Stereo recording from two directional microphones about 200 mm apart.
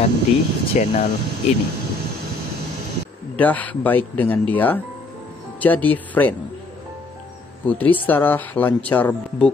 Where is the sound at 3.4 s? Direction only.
10° left (ahead or behind).